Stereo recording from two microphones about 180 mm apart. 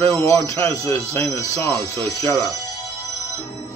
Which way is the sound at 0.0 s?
15° left (ahead or behind).